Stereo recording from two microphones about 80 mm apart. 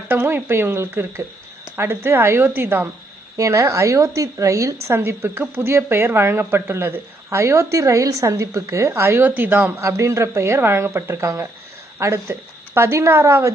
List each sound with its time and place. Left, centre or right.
0.1 s a woman's voice: right
3.3 s a woman's voice: right
9.8 s speech: right